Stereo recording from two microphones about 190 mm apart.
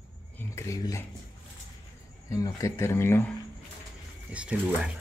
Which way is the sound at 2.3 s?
15° left (ahead or behind).